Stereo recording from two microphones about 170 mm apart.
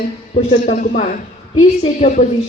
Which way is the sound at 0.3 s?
50° left (ahead or behind).